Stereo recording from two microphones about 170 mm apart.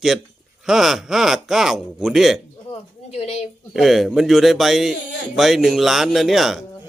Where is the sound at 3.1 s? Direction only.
40° left (ahead or behind).